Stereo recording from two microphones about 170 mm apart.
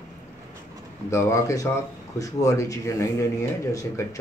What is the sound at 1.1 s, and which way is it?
Speech, 20° left (ahead or behind).